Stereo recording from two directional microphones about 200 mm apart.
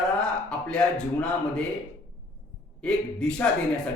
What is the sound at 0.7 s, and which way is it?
Speech, 5° left (ahead or behind).